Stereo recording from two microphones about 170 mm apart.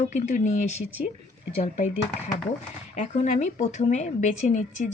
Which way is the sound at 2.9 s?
45° left (ahead or behind).